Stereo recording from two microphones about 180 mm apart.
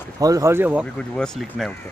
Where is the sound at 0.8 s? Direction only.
5° left (ahead or behind).